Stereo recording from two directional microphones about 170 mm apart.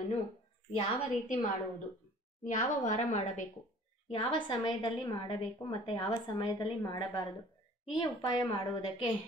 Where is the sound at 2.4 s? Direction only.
45° left (ahead or behind).